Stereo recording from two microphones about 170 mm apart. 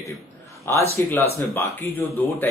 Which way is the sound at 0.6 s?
15° left (ahead or behind).